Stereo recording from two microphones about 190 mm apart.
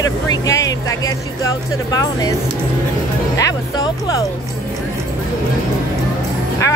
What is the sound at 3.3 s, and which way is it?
Speech, 15° left (ahead or behind).